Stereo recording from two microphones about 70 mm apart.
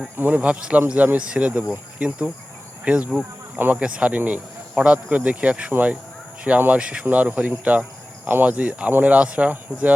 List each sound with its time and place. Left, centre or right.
0.2 s speech: right